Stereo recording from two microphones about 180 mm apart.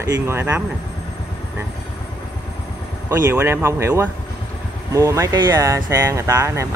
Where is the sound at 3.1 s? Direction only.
10° right (ahead or behind).